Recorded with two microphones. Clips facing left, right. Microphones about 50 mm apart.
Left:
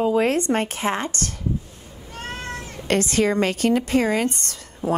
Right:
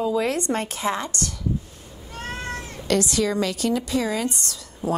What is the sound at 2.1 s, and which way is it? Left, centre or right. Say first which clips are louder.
Cat: even; centre.